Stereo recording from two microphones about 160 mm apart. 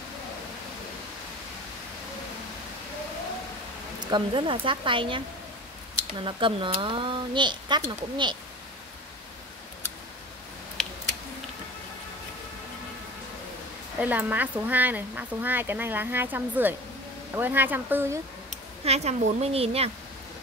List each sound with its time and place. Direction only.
4.1 s speech: 30° right (ahead or behind)
6.2 s speech: 30° right (ahead or behind)
10.8 s a sound: 5° left (ahead or behind)
13.9 s speech: 10° right (ahead or behind)
18.5 s speech: 45° right (ahead or behind)